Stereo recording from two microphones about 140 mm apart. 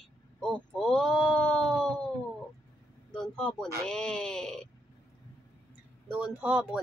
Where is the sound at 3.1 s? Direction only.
5° left (ahead or behind).